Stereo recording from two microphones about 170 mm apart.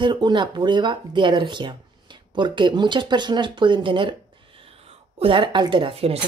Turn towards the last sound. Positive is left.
turn(degrees=-35)  # may be behind; listen again after turning